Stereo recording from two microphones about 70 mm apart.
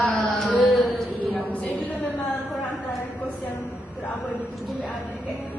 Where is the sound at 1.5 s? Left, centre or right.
Left.